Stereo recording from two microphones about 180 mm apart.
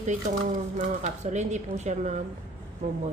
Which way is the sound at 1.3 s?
40° right (ahead or behind).